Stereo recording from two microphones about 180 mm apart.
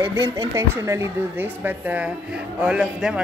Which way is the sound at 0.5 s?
15° right (ahead or behind).